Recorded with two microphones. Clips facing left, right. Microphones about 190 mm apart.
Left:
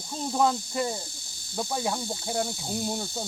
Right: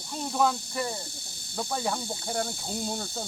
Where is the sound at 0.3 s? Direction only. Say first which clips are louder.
Left 2 dB; 25° left (ahead or behind).